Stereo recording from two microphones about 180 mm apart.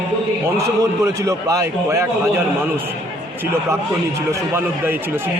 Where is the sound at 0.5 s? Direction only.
20° right (ahead or behind).